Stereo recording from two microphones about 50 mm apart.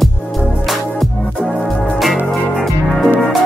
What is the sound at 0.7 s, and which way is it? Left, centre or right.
Music, centre.